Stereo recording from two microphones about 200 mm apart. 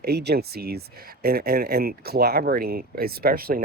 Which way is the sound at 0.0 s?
55° right (ahead or behind).